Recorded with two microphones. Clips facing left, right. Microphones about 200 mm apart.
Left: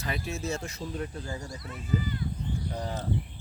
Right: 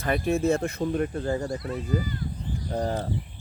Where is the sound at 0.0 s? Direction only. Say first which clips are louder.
Right 10 dB; 55° right (ahead or behind).